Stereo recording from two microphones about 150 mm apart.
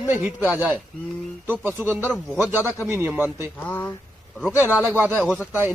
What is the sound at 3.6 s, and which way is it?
Speech, 10° left (ahead or behind).